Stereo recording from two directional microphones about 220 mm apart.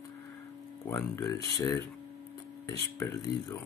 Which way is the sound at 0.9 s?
15° left (ahead or behind).